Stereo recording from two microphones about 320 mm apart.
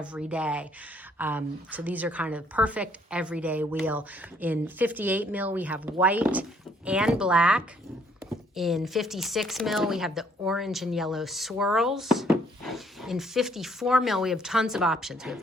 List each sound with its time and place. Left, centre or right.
0.0 s speech: centre